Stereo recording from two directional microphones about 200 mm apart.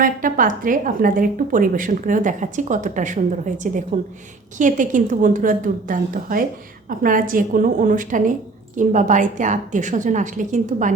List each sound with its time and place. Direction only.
0.0 s a woman's voice: 45° right (ahead or behind)